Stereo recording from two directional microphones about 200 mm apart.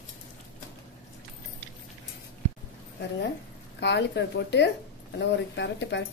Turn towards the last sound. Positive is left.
turn(degrees=60)  # may be behind; listen again after turning